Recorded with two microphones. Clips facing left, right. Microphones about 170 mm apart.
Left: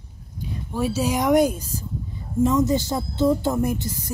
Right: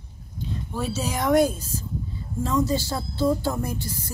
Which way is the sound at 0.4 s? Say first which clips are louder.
Left 4 dB; 15° left (ahead or behind).